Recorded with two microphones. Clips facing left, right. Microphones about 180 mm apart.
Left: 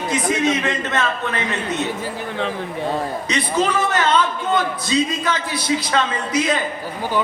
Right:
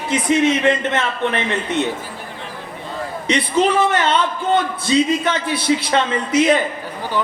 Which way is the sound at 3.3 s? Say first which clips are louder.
Right 5 dB; 30° right (ahead or behind).